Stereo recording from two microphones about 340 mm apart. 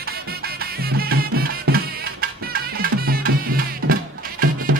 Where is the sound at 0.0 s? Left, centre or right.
Right.